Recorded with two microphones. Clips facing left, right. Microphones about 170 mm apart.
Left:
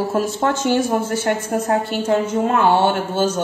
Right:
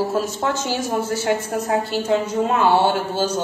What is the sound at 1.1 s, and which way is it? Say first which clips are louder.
A woman's voice: left 1 dB; 55° left (ahead or behind).